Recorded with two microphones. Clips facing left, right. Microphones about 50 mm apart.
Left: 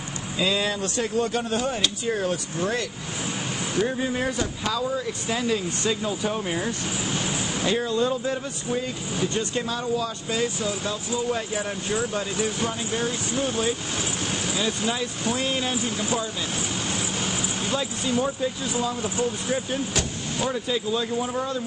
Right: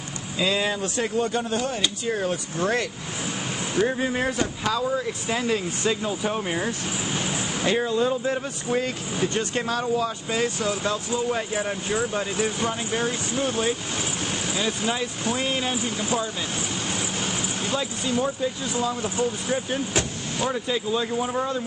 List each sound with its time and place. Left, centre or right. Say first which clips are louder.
0.4 s speech: right 1 dB; centre
1.2 s speech: even; centre
2.6 s speech: right 3 dB; right
3.7 s speech: right 2 dB; right
9.2 s speech: right 1 dB; right
10.0 s speech: right 1 dB; right
11.2 s speech: right 1 dB; right; by 19.6 s centre
19.7 s speech: right 1 dB; right
20.3 s speech: right 1 dB; centre